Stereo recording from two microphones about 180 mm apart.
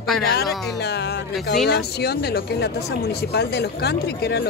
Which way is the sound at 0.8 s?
65° left (ahead or behind).